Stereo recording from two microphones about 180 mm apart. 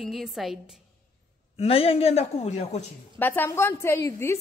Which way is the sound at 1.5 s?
35° left (ahead or behind).